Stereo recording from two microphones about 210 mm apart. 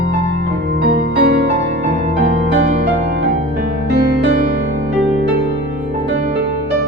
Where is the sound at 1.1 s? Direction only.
50° right (ahead or behind).